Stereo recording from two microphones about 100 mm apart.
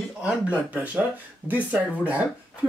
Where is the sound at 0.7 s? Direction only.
15° right (ahead or behind).